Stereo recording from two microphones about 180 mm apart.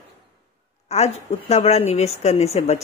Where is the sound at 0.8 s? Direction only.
35° left (ahead or behind).